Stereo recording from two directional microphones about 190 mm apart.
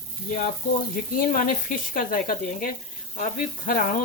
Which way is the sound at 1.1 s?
45° left (ahead or behind).